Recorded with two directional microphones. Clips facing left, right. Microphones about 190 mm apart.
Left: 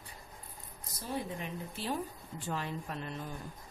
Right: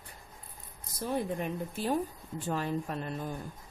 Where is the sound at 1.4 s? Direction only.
45° right (ahead or behind).